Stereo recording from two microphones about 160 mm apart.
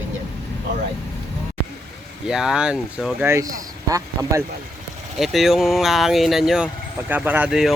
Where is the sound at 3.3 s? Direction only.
20° right (ahead or behind).